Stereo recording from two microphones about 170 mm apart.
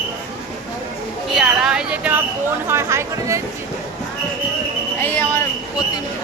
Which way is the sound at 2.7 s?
15° right (ahead or behind).